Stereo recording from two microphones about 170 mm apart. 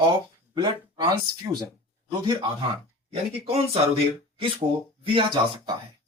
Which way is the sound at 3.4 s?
35° right (ahead or behind).